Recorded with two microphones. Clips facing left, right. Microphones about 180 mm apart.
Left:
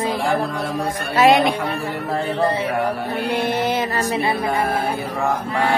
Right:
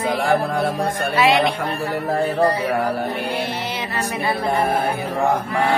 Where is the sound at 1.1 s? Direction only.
45° left (ahead or behind).